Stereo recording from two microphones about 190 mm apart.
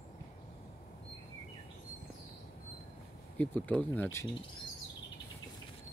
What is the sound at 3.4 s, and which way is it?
Speech, 5° left (ahead or behind).